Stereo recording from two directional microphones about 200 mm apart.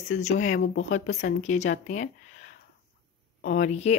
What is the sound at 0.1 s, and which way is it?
Speech, 35° left (ahead or behind).